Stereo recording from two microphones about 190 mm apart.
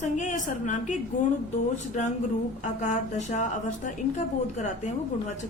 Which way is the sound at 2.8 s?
40° left (ahead or behind).